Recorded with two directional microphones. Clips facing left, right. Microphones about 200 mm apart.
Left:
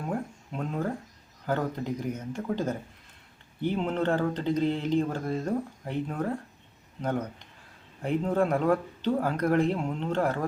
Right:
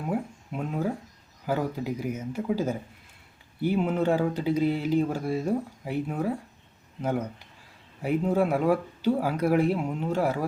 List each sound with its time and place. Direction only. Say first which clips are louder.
0.1 s speech: right 5 dB; 5° right (ahead or behind)